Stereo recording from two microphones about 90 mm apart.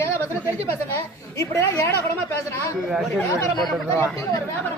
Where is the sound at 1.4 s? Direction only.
35° left (ahead or behind).